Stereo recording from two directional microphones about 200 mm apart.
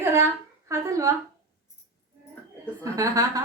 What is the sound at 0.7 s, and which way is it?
Speech, 15° right (ahead or behind).